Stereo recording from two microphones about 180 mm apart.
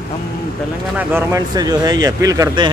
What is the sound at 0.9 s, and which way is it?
Speech, 15° right (ahead or behind).